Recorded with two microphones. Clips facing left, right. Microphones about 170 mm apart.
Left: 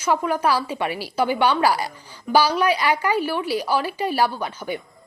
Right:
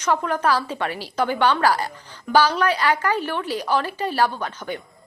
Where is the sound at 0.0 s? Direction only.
10° left (ahead or behind).